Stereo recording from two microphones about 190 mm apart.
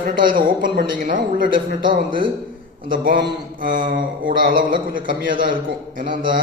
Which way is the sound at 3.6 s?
45° right (ahead or behind).